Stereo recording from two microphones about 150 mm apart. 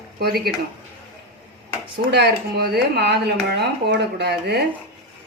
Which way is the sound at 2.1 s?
90° right.